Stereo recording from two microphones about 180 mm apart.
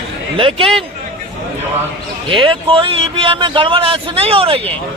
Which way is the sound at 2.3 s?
30° right (ahead or behind).